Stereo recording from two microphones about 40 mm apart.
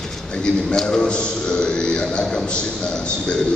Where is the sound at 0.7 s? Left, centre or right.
Centre.